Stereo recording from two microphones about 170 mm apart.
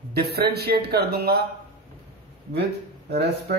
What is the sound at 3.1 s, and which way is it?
Speech, 70° right (ahead or behind).